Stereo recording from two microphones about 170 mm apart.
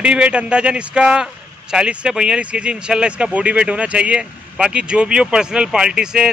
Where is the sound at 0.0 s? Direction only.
5° right (ahead or behind).